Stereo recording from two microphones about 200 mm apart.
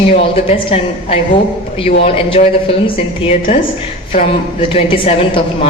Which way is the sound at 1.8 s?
30° left (ahead or behind).